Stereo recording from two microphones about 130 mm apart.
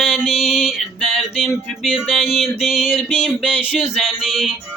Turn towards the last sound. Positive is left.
turn(degrees=-5)  # may be behind; listen again after turning